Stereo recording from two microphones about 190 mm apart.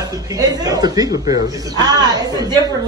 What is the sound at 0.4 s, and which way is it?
A woman's voice, 20° right (ahead or behind).